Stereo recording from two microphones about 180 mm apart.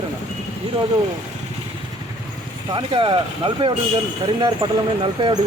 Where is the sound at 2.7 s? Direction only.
25° right (ahead or behind).